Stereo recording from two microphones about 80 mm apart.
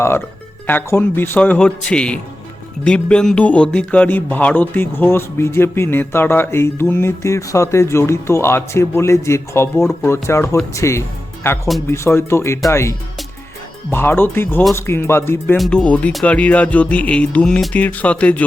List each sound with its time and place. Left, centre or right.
0.7 s speech: left
1.4 s speech: centre; by 13.0 s left
13.9 s speech: left
15.7 s speech: centre